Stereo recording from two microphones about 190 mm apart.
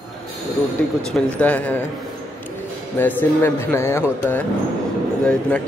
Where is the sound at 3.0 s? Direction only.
10° left (ahead or behind).